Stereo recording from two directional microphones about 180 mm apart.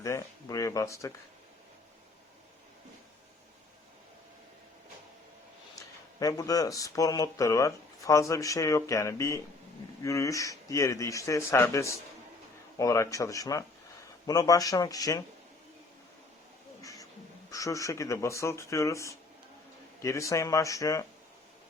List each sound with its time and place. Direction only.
0.0 s speech: 20° left (ahead or behind)
5.7 s speech: 20° left (ahead or behind)
16.8 s a sound: 20° left (ahead or behind)
17.5 s speech: 20° left (ahead or behind)